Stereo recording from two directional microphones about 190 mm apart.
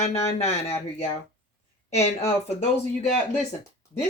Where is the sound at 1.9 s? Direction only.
35° left (ahead or behind).